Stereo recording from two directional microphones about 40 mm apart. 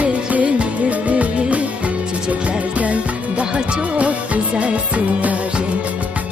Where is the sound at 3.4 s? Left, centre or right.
Right.